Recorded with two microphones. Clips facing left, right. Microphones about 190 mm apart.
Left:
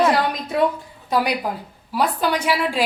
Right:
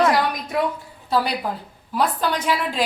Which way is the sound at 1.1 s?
15° left (ahead or behind).